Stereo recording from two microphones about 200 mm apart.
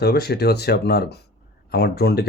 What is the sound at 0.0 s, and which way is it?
Speech, 50° left (ahead or behind).